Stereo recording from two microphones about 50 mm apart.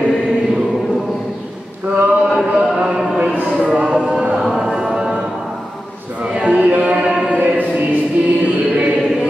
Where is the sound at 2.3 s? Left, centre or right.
Centre.